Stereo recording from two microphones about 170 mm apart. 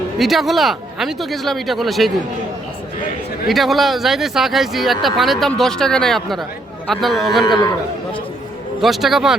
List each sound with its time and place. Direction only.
0.2 s speech: centre (ahead or behind)
3.5 s speech: centre (ahead or behind)
7.4 s a man's voice: 25° left (ahead or behind)
8.8 s speech: centre (ahead or behind)